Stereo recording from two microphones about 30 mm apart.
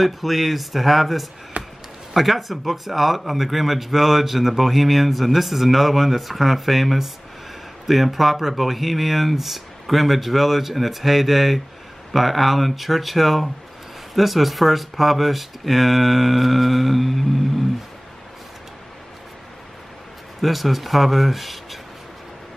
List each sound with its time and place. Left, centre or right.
0.0 s speech: centre
1.6 s a sound: right
2.1 s speech: centre
20.4 s speech: centre